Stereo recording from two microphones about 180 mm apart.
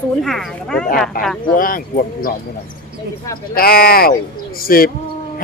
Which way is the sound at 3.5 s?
55° left (ahead or behind).